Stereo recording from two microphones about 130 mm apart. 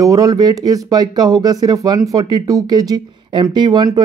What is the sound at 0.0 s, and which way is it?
Speech, 30° right (ahead or behind).